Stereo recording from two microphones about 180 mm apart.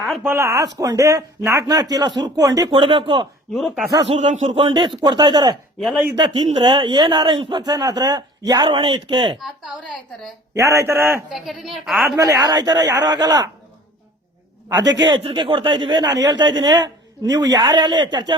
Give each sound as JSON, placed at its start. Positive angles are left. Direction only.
{"t": 0.0, "sound": "a sound", "side_deg": 0}
{"t": 0.3, "sound": "a man's voice", "side_deg": -15}
{"t": 3.5, "sound": "a woman's voice", "side_deg": 0}
{"t": 4.0, "sound": "speech", "side_deg": -35}
{"t": 10.5, "sound": "a man's voice", "side_deg": -15}
{"t": 11.3, "sound": "a woman's voice", "side_deg": 0}
{"t": 12.0, "sound": "speech", "side_deg": -20}
{"t": 12.8, "sound": "speech", "side_deg": -75}
{"t": 13.1, "sound": "speech", "side_deg": -20}
{"t": 14.7, "sound": "speech", "side_deg": -20}